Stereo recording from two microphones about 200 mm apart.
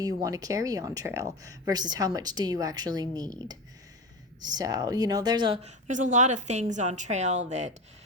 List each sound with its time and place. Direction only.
0.0 s speech: 15° right (ahead or behind)
4.4 s speech: 20° right (ahead or behind)
5.9 s a woman's voice: 35° right (ahead or behind)